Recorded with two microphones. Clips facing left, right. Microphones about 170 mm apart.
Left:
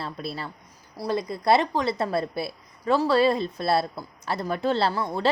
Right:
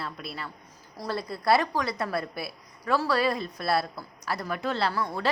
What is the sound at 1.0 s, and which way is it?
A woman's voice, 20° left (ahead or behind).